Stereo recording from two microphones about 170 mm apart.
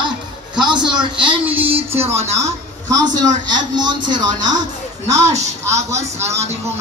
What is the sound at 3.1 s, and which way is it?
A man's voice, 25° right (ahead or behind).